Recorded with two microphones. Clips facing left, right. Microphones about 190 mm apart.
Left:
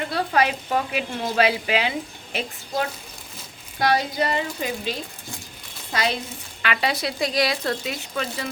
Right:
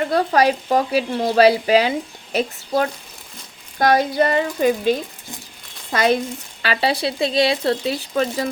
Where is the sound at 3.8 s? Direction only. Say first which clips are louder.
Right 6 dB; 50° right (ahead or behind).